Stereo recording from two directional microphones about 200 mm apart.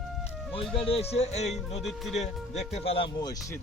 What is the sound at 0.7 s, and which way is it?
Speech, 30° left (ahead or behind).